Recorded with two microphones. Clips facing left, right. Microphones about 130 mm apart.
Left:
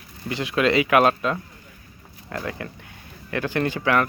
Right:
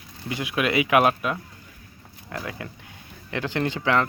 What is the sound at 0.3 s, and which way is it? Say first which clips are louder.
Speech: left 4 dB; 15° right (ahead or behind).